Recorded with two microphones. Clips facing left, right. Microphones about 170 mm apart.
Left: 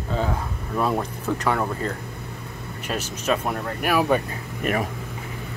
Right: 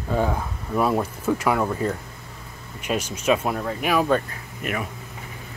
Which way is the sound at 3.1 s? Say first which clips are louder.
Right 2 dB; 10° right (ahead or behind).